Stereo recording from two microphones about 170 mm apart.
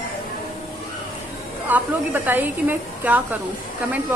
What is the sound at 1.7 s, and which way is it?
Speech, 10° right (ahead or behind).